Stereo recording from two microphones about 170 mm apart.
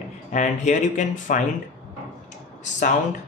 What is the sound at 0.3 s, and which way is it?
Speech, 45° left (ahead or behind).